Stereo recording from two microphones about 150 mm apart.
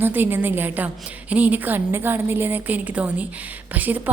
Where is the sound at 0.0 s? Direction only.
15° right (ahead or behind).